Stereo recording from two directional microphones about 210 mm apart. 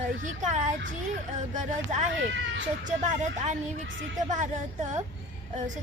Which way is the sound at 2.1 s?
60° right (ahead or behind).